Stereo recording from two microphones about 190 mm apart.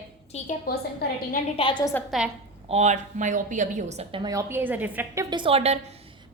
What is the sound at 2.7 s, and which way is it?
A woman's voice, 35° right (ahead or behind).